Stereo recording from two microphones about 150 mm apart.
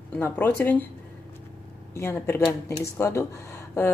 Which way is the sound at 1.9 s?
15° left (ahead or behind).